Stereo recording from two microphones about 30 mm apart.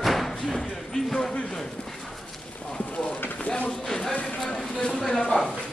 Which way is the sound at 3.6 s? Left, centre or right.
Centre.